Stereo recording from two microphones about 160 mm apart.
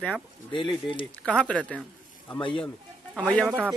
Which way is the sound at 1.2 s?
5° left (ahead or behind).